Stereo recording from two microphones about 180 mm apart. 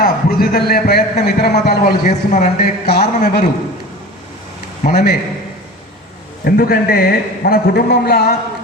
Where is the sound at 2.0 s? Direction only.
40° left (ahead or behind).